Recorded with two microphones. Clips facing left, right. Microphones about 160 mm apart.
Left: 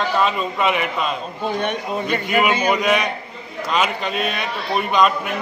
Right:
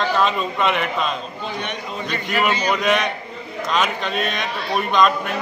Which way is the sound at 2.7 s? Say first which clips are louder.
Left 1 dB; 5° left (ahead or behind).